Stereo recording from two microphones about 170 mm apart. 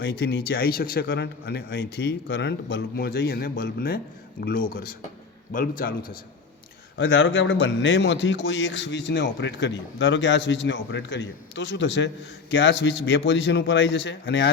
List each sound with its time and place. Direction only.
0.0 s a man's voice: 85° left; by 6.1 s 55° left (ahead or behind)
6.9 s a man's voice: 90° left